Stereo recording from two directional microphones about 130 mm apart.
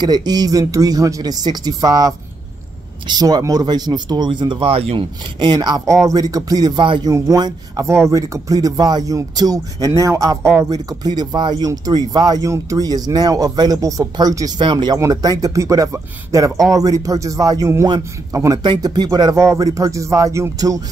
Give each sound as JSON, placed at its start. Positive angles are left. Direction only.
{"t": 0.0, "sound": "speech", "side_deg": -30}
{"t": 7.1, "sound": "speech", "side_deg": -25}